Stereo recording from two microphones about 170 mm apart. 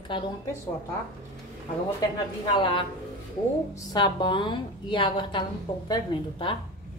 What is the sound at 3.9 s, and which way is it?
A woman's voice, 25° left (ahead or behind).